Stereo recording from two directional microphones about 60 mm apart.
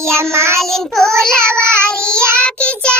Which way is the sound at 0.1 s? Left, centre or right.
Right.